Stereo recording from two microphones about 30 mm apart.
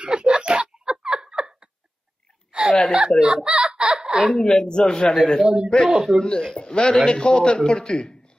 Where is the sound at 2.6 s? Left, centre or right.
Right.